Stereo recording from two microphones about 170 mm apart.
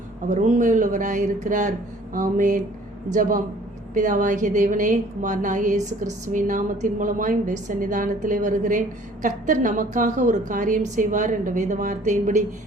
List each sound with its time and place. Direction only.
0.3 s a woman's voice: 45° right (ahead or behind)